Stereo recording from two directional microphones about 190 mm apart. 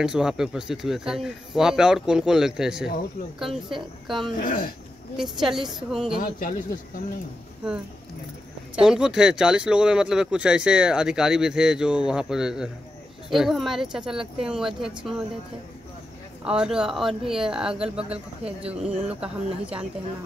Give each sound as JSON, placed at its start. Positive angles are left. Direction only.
{"t": 0.0, "sound": "speech", "side_deg": -5}
{"t": 4.4, "sound": "speech", "side_deg": 45}
{"t": 5.1, "sound": "speech", "side_deg": 0}
{"t": 6.1, "sound": "speech", "side_deg": 45}
{"t": 8.7, "sound": "speech", "side_deg": -5}
{"t": 16.4, "sound": "speech", "side_deg": -5}
{"t": 18.0, "sound": "speech", "side_deg": -30}
{"t": 19.0, "sound": "speech", "side_deg": -5}